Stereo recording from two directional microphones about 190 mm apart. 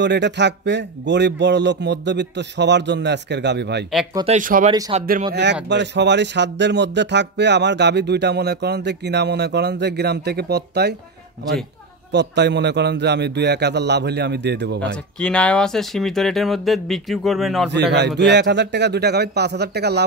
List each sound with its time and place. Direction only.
0.0 s speech: 65° right (ahead or behind)
4.3 s speech: 45° right (ahead or behind)
4.9 s speech: 30° right (ahead or behind)
5.3 s speech: 65° right (ahead or behind)
12.1 s speech: 65° right (ahead or behind)
15.1 s speech: 5° left (ahead or behind)
17.6 s speech: 60° right (ahead or behind)